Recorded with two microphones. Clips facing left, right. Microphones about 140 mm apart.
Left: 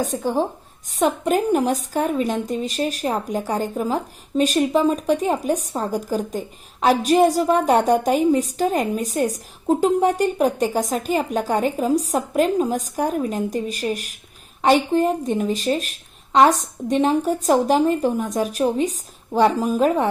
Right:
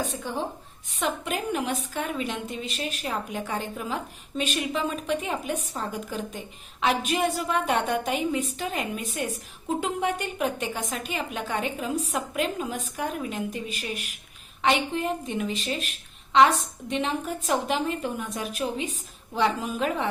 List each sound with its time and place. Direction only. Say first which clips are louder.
0.0 s a woman's voice: left 9 dB; 40° left (ahead or behind)